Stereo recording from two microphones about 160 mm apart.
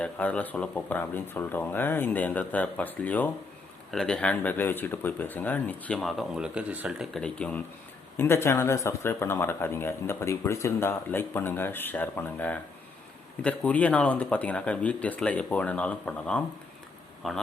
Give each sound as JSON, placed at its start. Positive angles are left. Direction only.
{"t": 0.0, "sound": "speech", "side_deg": 10}